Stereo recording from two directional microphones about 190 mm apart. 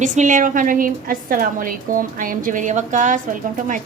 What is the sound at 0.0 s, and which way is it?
A woman's voice, 40° right (ahead or behind).